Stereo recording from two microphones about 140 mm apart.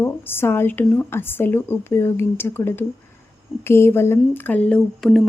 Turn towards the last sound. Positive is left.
turn(degrees=0)  # may be behind; listen again after turning